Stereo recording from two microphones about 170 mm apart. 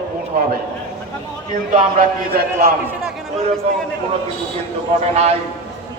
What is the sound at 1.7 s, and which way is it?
A man's voice, 55° right (ahead or behind).